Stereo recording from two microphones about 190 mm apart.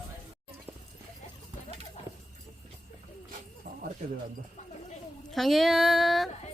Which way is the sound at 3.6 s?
40° right (ahead or behind).